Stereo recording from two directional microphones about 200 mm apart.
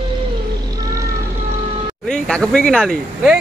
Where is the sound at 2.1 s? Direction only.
5° left (ahead or behind).